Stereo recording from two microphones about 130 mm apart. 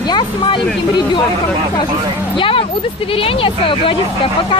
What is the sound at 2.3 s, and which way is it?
A woman's voice, 40° left (ahead or behind).